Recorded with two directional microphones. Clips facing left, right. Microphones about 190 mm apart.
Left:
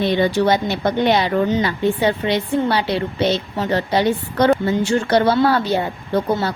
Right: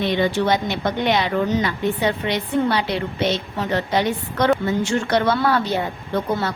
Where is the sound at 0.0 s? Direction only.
35° left (ahead or behind).